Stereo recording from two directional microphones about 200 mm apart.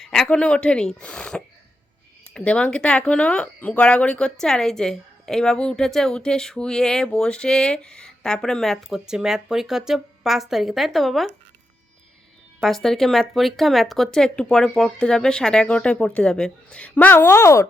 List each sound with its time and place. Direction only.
0.0 s speech: centre (ahead or behind)
12.5 s speech: centre (ahead or behind)